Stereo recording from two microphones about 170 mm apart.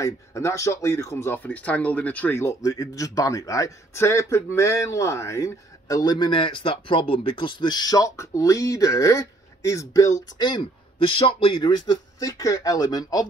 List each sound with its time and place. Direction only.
0.0 s speech: 15° left (ahead or behind)